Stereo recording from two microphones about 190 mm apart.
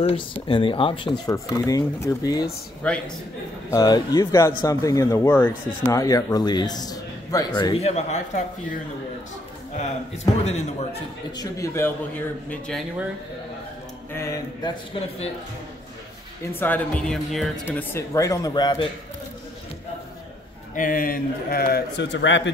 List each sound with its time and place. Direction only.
0.0 s speech: 25° left (ahead or behind)
2.8 s speech: 5° left (ahead or behind)
3.7 s speech: 20° left (ahead or behind)
7.8 s a man's voice: 35° left (ahead or behind)
9.8 s a man's voice: 35° left (ahead or behind)
11.3 s speech: 15° left (ahead or behind)
12.4 s speech: 5° left (ahead or behind)
14.1 s a sound: 15° left (ahead or behind)
15.0 s a man's voice: 30° left (ahead or behind)
16.5 s speech: 10° left (ahead or behind)
20.7 s speech: 45° left (ahead or behind); by 22.5 s 75° left (ahead or behind)